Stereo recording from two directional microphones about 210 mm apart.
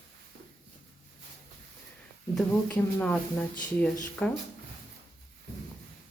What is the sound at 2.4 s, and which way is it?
Speech, 5° left (ahead or behind).